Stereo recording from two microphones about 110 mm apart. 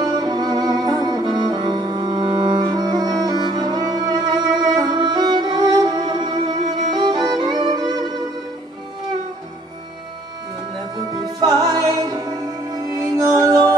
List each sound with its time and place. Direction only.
0.0 s music: 40° right (ahead or behind)
11.3 s music: 40° right (ahead or behind)